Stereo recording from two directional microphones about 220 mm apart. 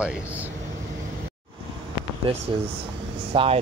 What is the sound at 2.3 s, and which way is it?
Speech, 25° right (ahead or behind).